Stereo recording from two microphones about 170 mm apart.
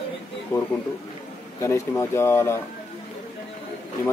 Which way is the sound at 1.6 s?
15° left (ahead or behind).